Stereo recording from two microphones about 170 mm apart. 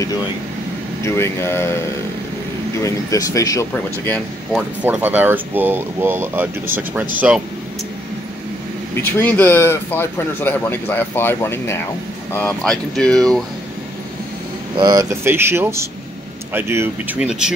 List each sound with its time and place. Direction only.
1.0 s speech: 15° left (ahead or behind)
4.1 s speech: centre (ahead or behind)
8.9 s speech: 10° left (ahead or behind)
14.8 s speech: 25° right (ahead or behind); by 17.6 s 5° right (ahead or behind)